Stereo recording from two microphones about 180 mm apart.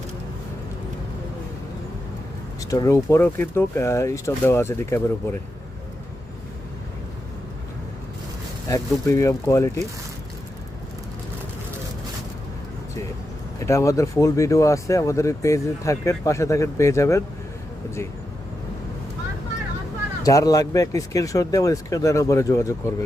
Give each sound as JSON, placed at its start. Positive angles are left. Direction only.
{"t": 2.6, "sound": "speech", "side_deg": 20}
{"t": 8.7, "sound": "speech", "side_deg": 15}
{"t": 13.6, "sound": "speech", "side_deg": 15}
{"t": 20.2, "sound": "speech", "side_deg": 20}